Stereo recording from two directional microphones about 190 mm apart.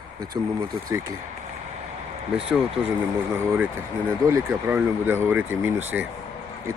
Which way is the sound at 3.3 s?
10° right (ahead or behind).